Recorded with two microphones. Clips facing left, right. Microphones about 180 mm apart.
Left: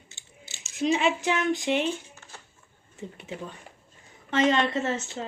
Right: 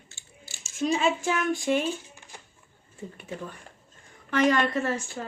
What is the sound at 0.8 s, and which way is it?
Speech, 20° left (ahead or behind).